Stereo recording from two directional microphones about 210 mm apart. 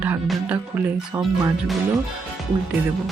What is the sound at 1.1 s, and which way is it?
Speech, 10° right (ahead or behind).